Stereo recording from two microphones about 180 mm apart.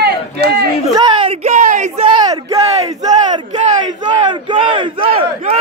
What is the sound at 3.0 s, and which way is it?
Battle cry, 20° right (ahead or behind).